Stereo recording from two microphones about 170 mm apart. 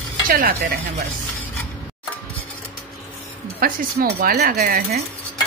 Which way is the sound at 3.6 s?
60° right (ahead or behind).